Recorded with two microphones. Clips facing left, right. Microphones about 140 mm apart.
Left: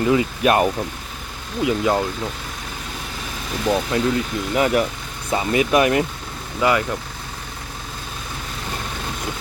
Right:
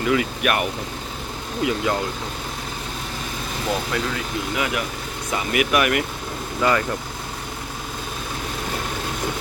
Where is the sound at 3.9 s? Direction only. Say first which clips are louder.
Left 5 dB; 30° left (ahead or behind).